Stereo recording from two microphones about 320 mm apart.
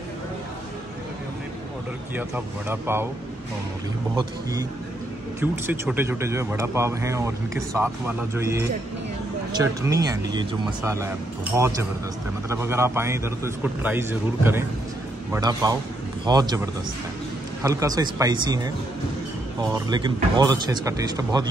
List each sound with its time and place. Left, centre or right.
2.1 s speech: centre
4.1 s speech: centre
17.6 s speech: centre